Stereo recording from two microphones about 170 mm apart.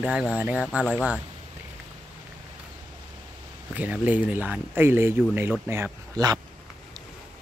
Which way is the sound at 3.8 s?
10° right (ahead or behind).